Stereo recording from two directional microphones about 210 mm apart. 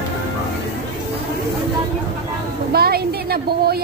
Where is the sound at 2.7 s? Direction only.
50° right (ahead or behind).